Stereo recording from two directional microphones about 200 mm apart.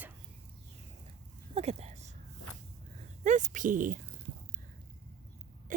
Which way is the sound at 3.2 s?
40° right (ahead or behind).